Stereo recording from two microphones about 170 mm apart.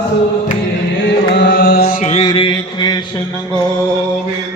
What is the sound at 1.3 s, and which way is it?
Music, 90° left.